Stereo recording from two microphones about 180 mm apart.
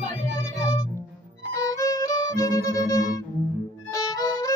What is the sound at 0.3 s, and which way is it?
Music, 20° left (ahead or behind).